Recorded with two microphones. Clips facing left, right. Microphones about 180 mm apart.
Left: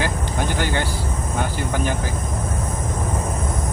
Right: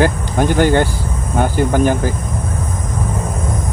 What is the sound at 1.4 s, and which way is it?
Speech, 50° right (ahead or behind).